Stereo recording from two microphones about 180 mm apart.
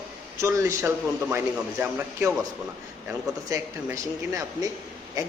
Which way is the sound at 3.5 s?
15° right (ahead or behind).